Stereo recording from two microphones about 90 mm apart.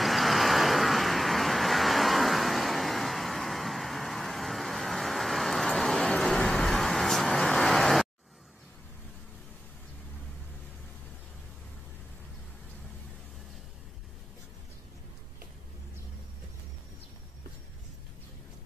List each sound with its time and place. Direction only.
0.0 s vehicle: centre (ahead or behind)